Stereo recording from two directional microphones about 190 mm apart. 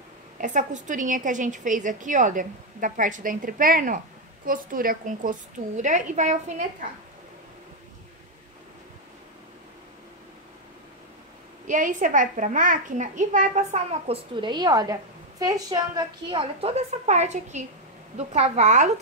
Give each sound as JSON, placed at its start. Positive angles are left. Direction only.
{"t": 0.4, "sound": "a woman's voice", "side_deg": -40}
{"t": 11.6, "sound": "a child's voice", "side_deg": -40}